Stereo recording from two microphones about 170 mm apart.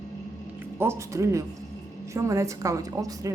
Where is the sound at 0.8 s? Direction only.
15° right (ahead or behind).